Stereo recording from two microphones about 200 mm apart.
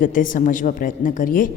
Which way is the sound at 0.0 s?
40° left (ahead or behind).